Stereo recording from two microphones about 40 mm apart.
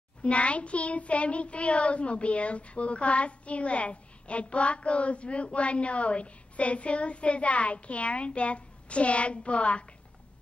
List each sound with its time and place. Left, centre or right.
0.2 s child singing: left